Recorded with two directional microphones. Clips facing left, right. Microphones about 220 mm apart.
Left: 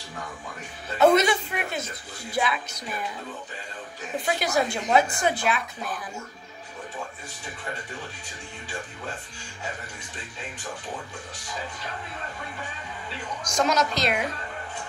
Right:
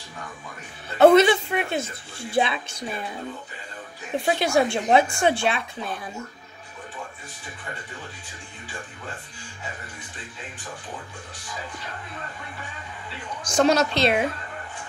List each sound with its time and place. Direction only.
0.9 s speech: 30° right (ahead or behind)
4.3 s speech: 25° right (ahead or behind)
13.4 s a woman's voice: 30° right (ahead or behind)